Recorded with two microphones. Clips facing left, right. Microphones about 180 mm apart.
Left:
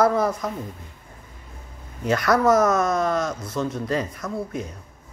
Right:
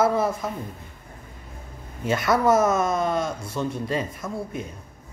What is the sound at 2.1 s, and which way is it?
Speech, 25° right (ahead or behind).